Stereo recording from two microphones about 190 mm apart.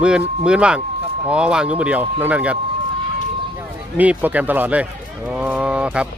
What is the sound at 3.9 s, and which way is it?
Speech, 10° right (ahead or behind).